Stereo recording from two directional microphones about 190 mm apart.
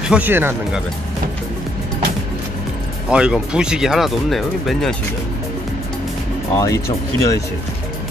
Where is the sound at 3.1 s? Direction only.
5° right (ahead or behind).